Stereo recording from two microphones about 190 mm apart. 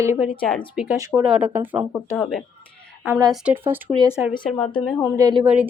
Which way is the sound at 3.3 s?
5° right (ahead or behind).